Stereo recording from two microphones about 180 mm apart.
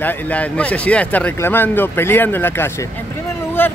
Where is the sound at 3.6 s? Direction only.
10° left (ahead or behind).